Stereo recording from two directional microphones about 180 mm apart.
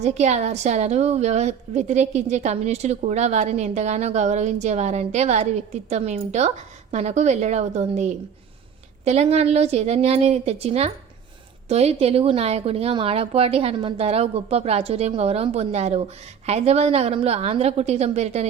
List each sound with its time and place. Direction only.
0.0 s speech: 40° right (ahead or behind)